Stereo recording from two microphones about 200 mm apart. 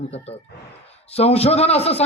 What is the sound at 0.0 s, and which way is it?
Speech, 30° left (ahead or behind).